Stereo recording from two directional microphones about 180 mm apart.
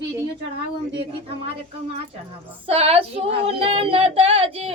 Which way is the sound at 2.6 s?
35° right (ahead or behind).